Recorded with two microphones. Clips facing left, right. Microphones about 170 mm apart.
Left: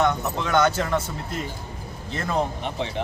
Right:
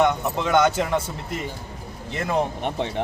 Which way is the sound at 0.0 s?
10° right (ahead or behind).